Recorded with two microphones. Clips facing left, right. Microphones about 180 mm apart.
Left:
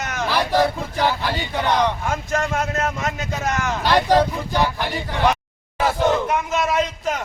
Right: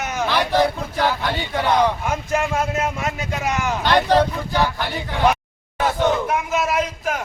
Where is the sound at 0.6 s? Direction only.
5° left (ahead or behind).